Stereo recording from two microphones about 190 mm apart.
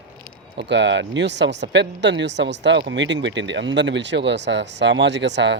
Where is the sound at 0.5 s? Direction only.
65° right (ahead or behind).